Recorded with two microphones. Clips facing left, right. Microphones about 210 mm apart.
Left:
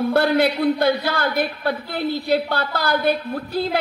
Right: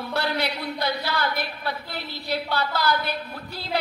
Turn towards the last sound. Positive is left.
turn(degrees=50)  # may be behind; listen again after turning